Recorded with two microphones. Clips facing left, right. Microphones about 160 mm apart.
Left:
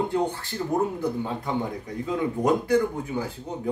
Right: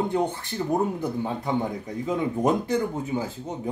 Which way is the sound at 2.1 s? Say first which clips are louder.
Even; 20° right (ahead or behind).